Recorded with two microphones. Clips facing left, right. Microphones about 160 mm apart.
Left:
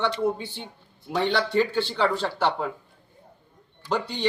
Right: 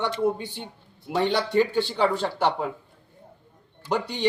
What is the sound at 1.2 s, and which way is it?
Speech, 15° right (ahead or behind).